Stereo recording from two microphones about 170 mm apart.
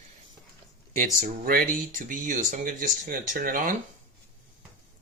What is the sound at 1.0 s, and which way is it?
Speech, 50° right (ahead or behind).